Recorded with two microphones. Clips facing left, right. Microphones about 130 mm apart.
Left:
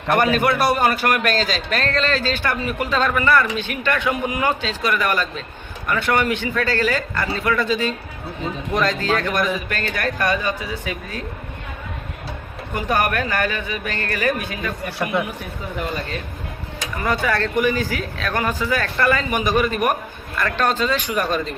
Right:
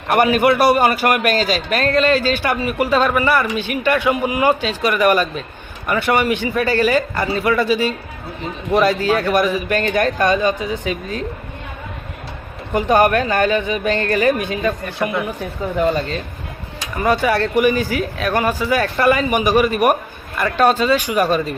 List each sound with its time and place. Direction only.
0.1 s a man's voice: 10° right (ahead or behind)
12.7 s a man's voice: 20° right (ahead or behind)
16.0 s a man's voice: 30° right (ahead or behind)
17.0 s speech: 15° right (ahead or behind)